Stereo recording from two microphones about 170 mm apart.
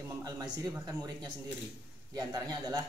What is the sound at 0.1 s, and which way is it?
Speech, 20° right (ahead or behind).